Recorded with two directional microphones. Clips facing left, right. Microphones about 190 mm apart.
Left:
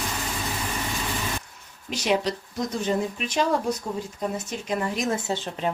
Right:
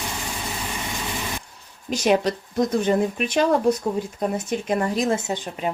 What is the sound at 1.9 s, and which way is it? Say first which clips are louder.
Speech: right 4 dB; 50° right (ahead or behind).